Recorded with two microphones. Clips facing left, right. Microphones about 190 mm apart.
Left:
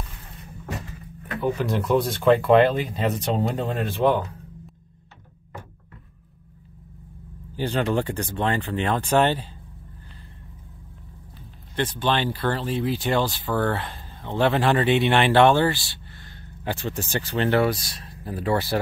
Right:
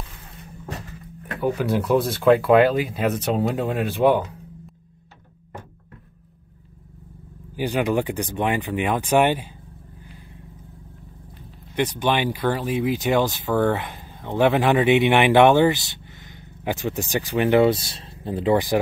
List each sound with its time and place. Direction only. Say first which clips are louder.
1.4 s speech: right 2 dB; 10° right (ahead or behind)
7.5 s speech: right 2 dB; 10° right (ahead or behind)
11.7 s speech: right 2 dB; 15° right (ahead or behind)